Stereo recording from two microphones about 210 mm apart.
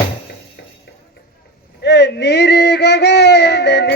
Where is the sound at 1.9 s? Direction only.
55° left (ahead or behind).